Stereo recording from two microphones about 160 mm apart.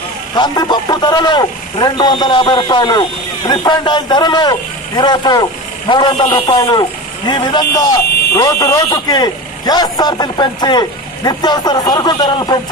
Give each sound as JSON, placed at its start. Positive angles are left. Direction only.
{"t": 0.4, "sound": "speech", "side_deg": 25}